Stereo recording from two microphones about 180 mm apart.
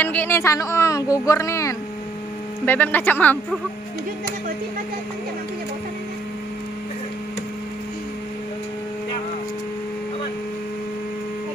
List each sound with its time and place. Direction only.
0.0 s speech: 10° left (ahead or behind)